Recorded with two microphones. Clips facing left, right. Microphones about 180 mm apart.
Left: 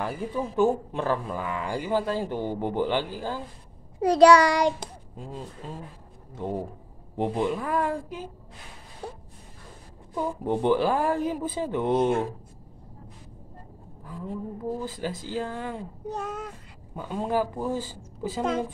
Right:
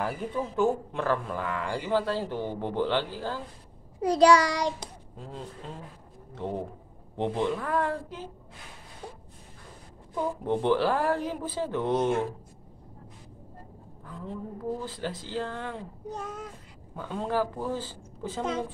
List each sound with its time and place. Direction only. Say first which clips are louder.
0.0 s speech: left 1 dB; 10° left (ahead or behind)
4.0 s a sound: left 4 dB; 70° left (ahead or behind)
5.1 s speech: left 1 dB; 10° left (ahead or behind)
10.1 s speech: left 1 dB; 10° left (ahead or behind)
14.0 s speech: left 3 dB; 10° left (ahead or behind)
16.1 s speech: left 4 dB; 70° left (ahead or behind)
16.9 s speech: left 2 dB; 15° left (ahead or behind)